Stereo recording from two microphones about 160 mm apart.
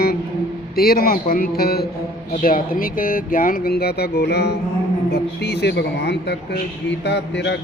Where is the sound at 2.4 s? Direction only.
60° left (ahead or behind).